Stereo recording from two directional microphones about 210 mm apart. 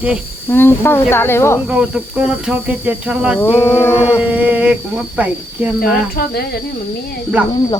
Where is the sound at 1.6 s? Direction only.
5° right (ahead or behind).